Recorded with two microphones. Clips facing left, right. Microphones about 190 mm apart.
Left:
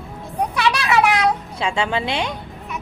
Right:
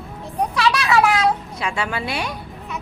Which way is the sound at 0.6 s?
20° left (ahead or behind).